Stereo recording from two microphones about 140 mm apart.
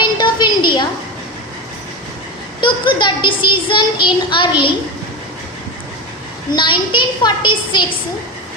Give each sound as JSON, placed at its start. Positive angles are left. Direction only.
{"t": 0.0, "sound": "a sound", "side_deg": 35}
{"t": 2.6, "sound": "speech", "side_deg": 35}
{"t": 6.6, "sound": "speech", "side_deg": 35}